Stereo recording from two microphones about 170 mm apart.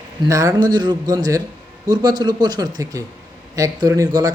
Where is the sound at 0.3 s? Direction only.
20° right (ahead or behind).